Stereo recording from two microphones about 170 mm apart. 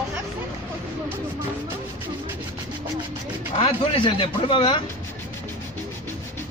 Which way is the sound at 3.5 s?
35° left (ahead or behind).